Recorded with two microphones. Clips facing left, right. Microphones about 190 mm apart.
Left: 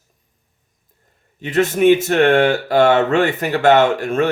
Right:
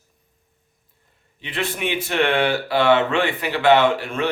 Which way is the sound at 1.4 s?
45° left (ahead or behind).